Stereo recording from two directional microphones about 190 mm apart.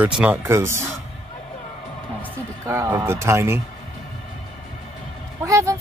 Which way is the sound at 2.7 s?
15° right (ahead or behind).